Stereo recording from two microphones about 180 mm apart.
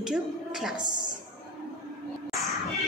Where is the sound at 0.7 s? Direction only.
25° right (ahead or behind).